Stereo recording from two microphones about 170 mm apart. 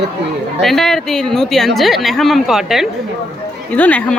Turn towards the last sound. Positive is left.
turn(degrees=10)  # may be behind; listen again after turning